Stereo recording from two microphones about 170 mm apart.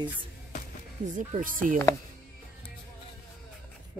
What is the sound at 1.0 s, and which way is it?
Speech, 45° right (ahead or behind).